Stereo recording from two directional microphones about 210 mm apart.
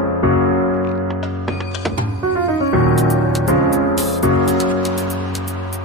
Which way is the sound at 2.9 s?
Centre (ahead or behind).